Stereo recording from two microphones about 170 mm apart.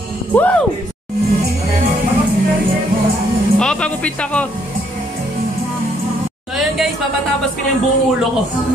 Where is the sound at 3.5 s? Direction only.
5° left (ahead or behind).